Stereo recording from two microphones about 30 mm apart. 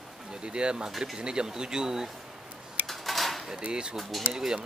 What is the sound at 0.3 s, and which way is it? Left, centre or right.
Speech, right.